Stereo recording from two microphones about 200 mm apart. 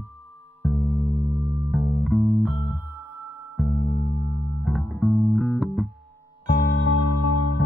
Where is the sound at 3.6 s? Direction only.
Centre (ahead or behind).